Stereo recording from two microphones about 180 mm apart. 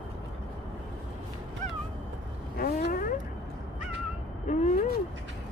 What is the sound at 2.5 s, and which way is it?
Vehicle, 55° left (ahead or behind).